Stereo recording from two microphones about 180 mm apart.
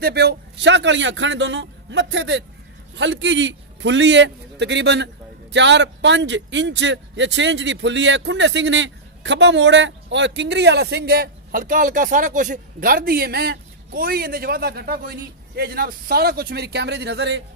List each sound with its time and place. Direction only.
0.0 s a man's voice: 65° right (ahead or behind)